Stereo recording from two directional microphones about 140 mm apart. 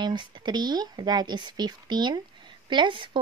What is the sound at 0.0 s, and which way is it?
Speech, 35° right (ahead or behind).